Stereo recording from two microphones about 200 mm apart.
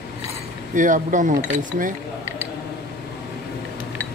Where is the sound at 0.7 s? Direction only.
40° right (ahead or behind).